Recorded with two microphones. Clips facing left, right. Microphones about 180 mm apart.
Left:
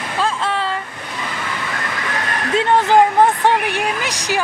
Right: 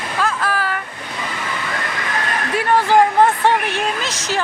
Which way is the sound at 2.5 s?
20° left (ahead or behind).